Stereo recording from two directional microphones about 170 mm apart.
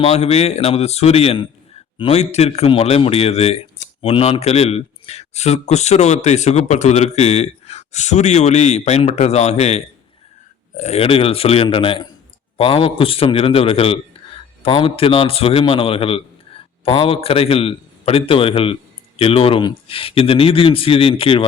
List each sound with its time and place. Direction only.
0.0 s a man's voice: 40° left (ahead or behind)